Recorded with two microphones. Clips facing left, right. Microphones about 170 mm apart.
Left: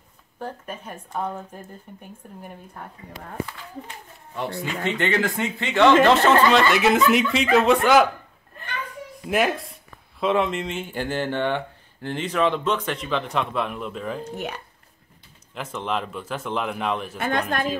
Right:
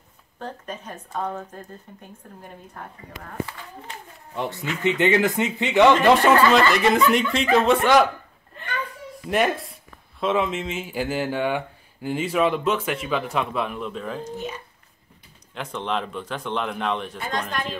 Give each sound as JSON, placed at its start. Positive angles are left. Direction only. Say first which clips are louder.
{"t": 0.4, "sound": "speech", "louder": "left 1 dB", "side_deg": 10}
{"t": 4.8, "sound": "a man's voice", "louder": "right 4 dB", "side_deg": -15}
{"t": 6.5, "sound": "speech", "louder": "even", "side_deg": 0}
{"t": 9.3, "sound": "speech", "louder": "even", "side_deg": 0}
{"t": 14.2, "sound": "speech", "louder": "even", "side_deg": 65}
{"t": 15.5, "sound": "speech", "louder": "even", "side_deg": 0}
{"t": 17.2, "sound": "speech", "louder": "left 4 dB", "side_deg": 60}